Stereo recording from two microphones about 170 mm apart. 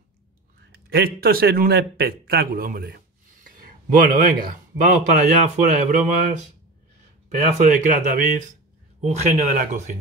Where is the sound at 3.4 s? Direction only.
55° right (ahead or behind).